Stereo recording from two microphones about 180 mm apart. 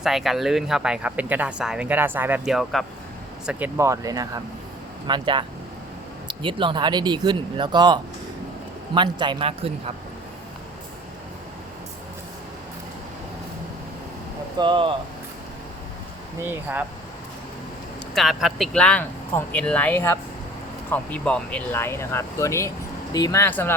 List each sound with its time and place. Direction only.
0.0 s speech: centre (ahead or behind); by 7.9 s 25° right (ahead or behind)
9.0 s speech: 25° right (ahead or behind)
14.6 s speech: 25° right (ahead or behind)
16.4 s speech: 10° right (ahead or behind)
18.1 s speech: centre (ahead or behind)